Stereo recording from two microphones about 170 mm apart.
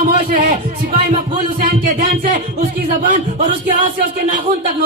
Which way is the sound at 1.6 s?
55° right (ahead or behind).